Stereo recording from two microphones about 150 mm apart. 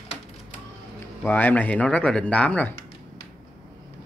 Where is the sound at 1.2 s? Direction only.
10° left (ahead or behind).